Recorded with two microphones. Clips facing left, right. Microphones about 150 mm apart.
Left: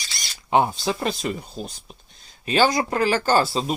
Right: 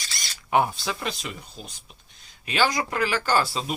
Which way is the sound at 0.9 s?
40° left (ahead or behind).